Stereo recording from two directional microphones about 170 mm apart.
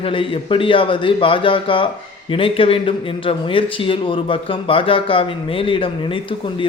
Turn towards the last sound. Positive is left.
turn(degrees=30)  # may be behind; listen again after turning